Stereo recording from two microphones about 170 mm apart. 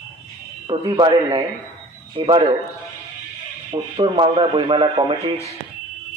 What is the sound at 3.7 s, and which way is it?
Speech, 30° right (ahead or behind).